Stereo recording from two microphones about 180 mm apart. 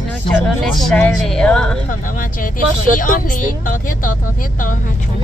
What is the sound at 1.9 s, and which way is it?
Speech, 50° left (ahead or behind).